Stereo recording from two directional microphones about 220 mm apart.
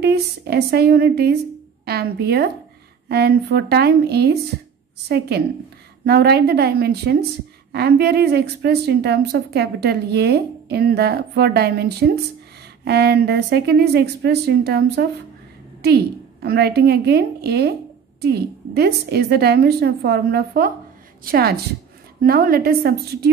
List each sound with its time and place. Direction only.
0.0 s a woman's voice: 45° right (ahead or behind)
16.4 s a woman's voice: 45° right (ahead or behind)